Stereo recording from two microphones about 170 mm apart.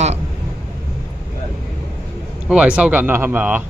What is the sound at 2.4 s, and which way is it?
Speech, 5° right (ahead or behind).